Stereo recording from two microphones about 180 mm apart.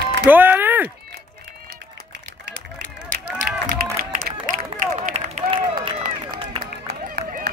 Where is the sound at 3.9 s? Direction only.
55° right (ahead or behind).